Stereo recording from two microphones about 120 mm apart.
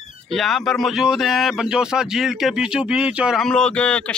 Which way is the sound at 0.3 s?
Centre (ahead or behind).